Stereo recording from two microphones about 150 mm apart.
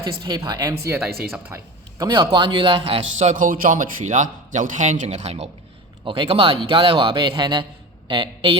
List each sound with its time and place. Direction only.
0.2 s speech: 25° right (ahead or behind)
1.5 s a sound: 20° right (ahead or behind)
2.0 s a man's voice: 30° right (ahead or behind)
3.2 s a man's voice: 55° right (ahead or behind); by 8.5 s 35° right (ahead or behind)